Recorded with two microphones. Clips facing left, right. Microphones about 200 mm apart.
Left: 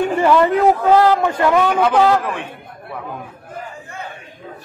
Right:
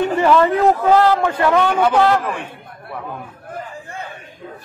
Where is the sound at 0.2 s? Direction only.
10° left (ahead or behind).